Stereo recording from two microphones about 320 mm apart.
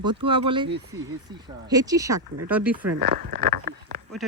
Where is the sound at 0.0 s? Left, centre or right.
Centre.